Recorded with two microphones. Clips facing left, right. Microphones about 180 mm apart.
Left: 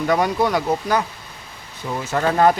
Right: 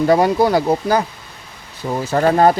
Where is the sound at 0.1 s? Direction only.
35° right (ahead or behind).